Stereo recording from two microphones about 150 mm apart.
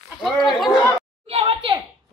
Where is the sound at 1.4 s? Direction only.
35° right (ahead or behind).